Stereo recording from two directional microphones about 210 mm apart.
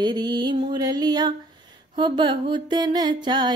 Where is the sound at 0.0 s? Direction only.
20° right (ahead or behind).